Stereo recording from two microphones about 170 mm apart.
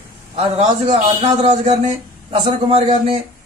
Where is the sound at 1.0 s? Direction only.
35° right (ahead or behind).